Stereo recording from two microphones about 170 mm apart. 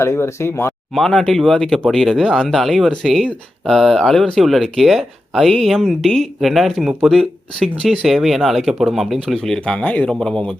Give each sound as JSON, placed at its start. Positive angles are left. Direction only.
{"t": 0.0, "sound": "speech", "side_deg": 15}
{"t": 0.9, "sound": "speech", "side_deg": 5}